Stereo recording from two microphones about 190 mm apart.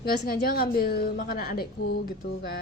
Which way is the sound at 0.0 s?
55° left (ahead or behind).